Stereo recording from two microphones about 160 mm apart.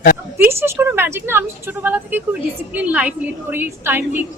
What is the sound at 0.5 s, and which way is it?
A woman's voice, 15° right (ahead or behind).